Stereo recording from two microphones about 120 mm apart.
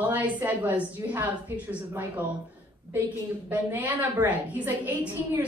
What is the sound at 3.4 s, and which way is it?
A woman's voice, 15° right (ahead or behind).